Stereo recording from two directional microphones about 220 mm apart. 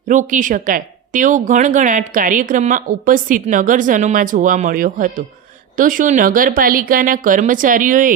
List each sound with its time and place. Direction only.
0.1 s a woman's voice: 35° right (ahead or behind)